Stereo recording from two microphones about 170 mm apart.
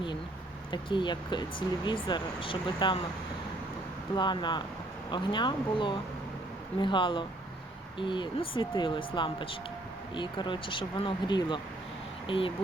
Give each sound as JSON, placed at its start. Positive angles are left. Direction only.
{"t": 0.7, "sound": "speech", "side_deg": 30}
{"t": 4.1, "sound": "speech", "side_deg": 25}